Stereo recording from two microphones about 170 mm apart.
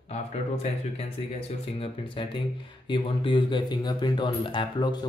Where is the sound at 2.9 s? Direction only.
30° left (ahead or behind).